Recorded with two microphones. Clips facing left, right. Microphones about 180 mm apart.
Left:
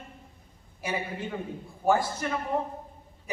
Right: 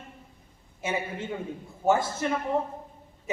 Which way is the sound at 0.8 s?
25° right (ahead or behind).